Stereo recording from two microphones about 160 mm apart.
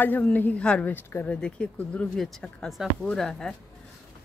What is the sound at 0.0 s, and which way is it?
Speech, 10° left (ahead or behind).